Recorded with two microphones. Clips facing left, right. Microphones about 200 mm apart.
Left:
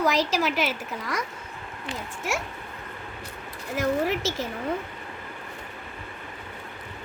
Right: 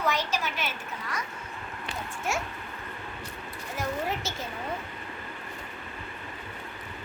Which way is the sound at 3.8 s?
90° left.